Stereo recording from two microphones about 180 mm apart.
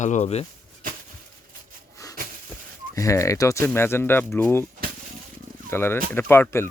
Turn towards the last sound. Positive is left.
turn(degrees=15)  # may be behind; listen again after turning